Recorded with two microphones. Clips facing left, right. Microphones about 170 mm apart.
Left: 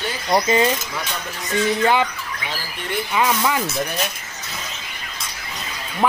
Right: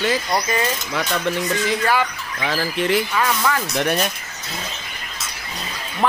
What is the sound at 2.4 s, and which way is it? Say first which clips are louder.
Bird: right 11 dB; 90° right.